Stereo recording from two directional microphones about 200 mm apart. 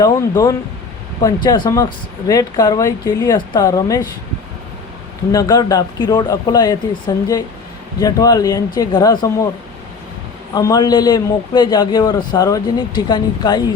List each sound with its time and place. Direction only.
0.0 s speech: 15° left (ahead or behind)
5.3 s a man's voice: 20° left (ahead or behind)
8.0 s speech: 20° left (ahead or behind)
10.5 s a man's voice: 20° left (ahead or behind)